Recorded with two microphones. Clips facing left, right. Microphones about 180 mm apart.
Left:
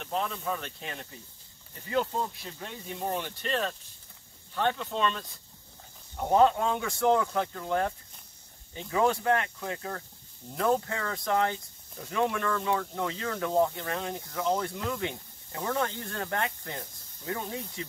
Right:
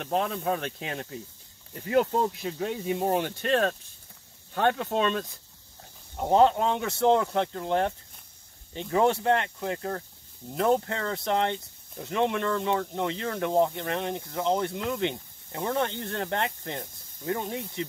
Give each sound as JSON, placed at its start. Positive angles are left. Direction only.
{"t": 0.0, "sound": "speech", "side_deg": -55}
{"t": 3.2, "sound": "speech", "side_deg": -55}
{"t": 6.1, "sound": "speech", "side_deg": -20}